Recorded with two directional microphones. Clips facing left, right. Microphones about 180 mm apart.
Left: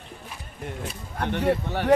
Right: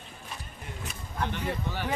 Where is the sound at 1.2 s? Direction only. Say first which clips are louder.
Left 8 dB; 70° left (ahead or behind).